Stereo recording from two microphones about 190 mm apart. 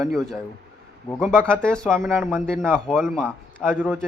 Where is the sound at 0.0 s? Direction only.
Centre (ahead or behind).